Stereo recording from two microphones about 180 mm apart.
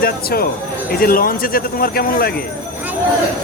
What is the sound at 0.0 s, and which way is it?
Speech, 60° left (ahead or behind).